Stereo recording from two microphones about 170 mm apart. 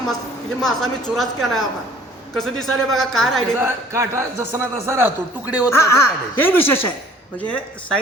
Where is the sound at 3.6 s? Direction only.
15° right (ahead or behind).